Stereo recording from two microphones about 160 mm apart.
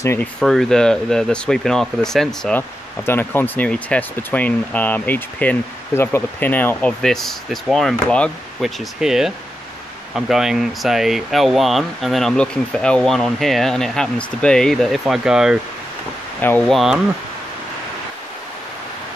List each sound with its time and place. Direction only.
0.0 s speech: 15° left (ahead or behind)
0.4 s speech: centre (ahead or behind)
3.1 s speech: 15° left (ahead or behind); by 15.6 s 5° right (ahead or behind)
16.3 s speech: 10° left (ahead or behind)